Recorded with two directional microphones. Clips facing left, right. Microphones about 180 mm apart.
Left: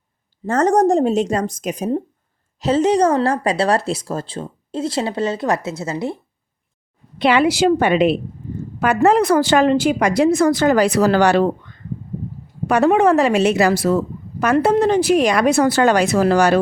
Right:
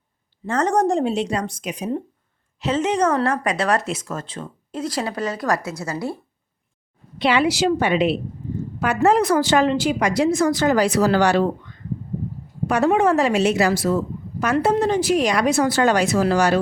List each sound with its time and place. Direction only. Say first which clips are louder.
0.4 s a woman's voice: left 4 dB; 40° left (ahead or behind); by 6.1 s 20° left (ahead or behind)
7.2 s a woman's voice: left 4 dB; 50° left (ahead or behind)
12.6 s a woman's voice: left 3 dB; 65° left (ahead or behind)